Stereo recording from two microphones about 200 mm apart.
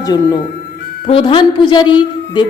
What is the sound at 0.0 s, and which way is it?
A woman's voice, 20° left (ahead or behind).